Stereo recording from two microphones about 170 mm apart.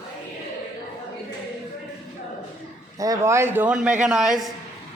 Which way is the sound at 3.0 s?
20° right (ahead or behind).